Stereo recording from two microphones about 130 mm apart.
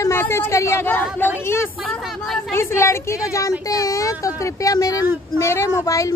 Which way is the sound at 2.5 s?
20° left (ahead or behind).